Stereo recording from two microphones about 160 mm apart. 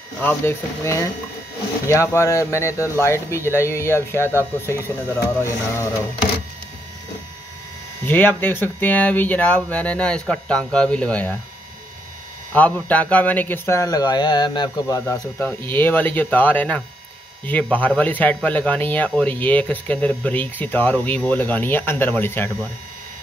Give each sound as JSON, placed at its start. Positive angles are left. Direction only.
{"t": 0.2, "sound": "speech", "side_deg": 15}
{"t": 8.0, "sound": "speech", "side_deg": 10}
{"t": 12.5, "sound": "speech", "side_deg": 10}